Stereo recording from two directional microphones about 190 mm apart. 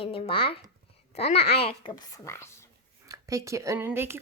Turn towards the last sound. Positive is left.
turn(degrees=-10)  # may be behind; listen again after turning